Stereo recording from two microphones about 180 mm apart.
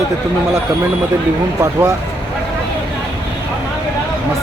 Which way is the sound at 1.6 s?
15° right (ahead or behind).